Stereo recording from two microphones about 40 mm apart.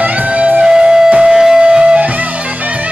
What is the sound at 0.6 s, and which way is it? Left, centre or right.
Music, centre.